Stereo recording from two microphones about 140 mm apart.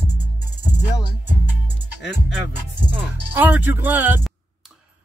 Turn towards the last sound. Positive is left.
turn(degrees=0)  # may be behind; listen again after turning